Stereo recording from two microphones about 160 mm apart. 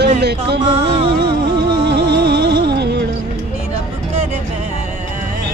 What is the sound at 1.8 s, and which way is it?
Music, 90° right.